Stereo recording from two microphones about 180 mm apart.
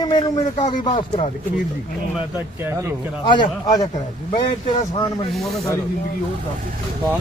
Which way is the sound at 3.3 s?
20° left (ahead or behind).